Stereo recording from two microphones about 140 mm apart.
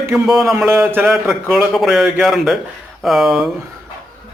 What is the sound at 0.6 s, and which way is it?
A man's voice, 15° right (ahead or behind).